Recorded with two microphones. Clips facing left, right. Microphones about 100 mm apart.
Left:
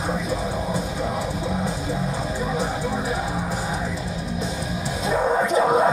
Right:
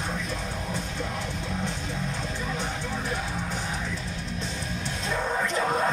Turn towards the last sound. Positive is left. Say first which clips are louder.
# left 8 dB
turn(degrees=15)  # may be behind; listen again after turning